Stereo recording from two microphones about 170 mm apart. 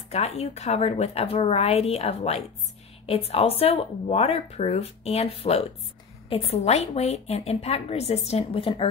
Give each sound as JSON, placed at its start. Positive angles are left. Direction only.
{"t": 0.1, "sound": "speech", "side_deg": 40}